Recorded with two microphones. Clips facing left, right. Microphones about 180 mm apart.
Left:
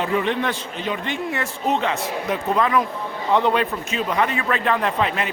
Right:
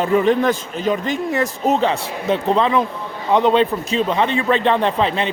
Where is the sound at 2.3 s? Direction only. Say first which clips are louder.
Right 5 dB; 25° right (ahead or behind).